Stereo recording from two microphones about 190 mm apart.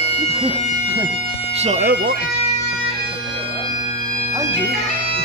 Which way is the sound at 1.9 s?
65° right (ahead or behind).